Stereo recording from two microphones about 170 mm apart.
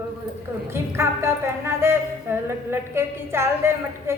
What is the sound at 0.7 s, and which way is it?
Speech, 15° right (ahead or behind).